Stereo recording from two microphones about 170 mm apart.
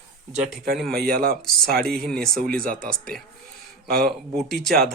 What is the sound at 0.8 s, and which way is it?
Speech, 5° left (ahead or behind).